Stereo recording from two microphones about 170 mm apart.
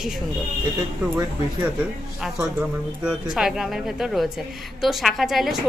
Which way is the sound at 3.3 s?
5° right (ahead or behind).